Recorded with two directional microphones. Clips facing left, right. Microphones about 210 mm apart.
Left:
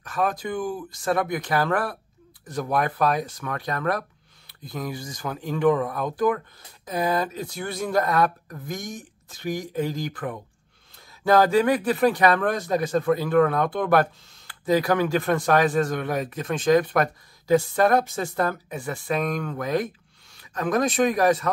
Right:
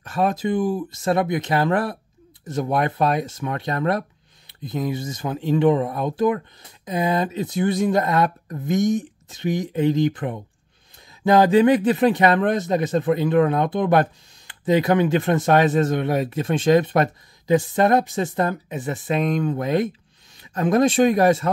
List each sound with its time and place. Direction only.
0.0 s speech: 25° right (ahead or behind)